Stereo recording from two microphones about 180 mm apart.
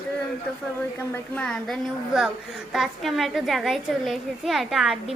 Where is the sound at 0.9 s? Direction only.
10° left (ahead or behind).